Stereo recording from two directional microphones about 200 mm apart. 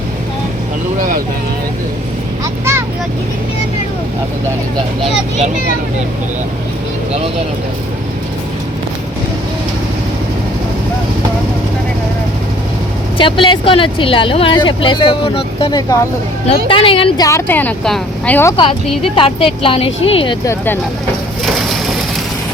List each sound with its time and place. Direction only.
2.4 s speech: 15° right (ahead or behind)
13.1 s speech: 25° left (ahead or behind)
17.2 s a woman's voice: 10° left (ahead or behind)
19.0 s speech: 25° left (ahead or behind)